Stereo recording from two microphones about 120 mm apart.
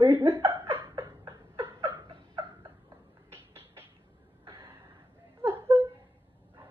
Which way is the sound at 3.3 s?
20° right (ahead or behind).